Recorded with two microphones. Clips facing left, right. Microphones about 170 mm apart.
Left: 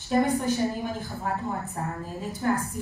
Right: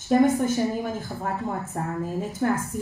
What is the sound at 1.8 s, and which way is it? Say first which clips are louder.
Speech: right 5 dB; 45° right (ahead or behind).